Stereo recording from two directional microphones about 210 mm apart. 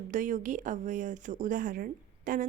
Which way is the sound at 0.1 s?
35° right (ahead or behind).